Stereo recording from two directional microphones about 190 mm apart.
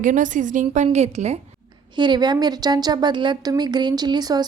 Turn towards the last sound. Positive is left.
turn(degrees=-20)  # may be behind; listen again after turning